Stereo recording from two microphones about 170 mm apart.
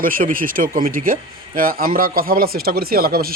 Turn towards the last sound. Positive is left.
turn(degrees=-60)  # may be behind; listen again after turning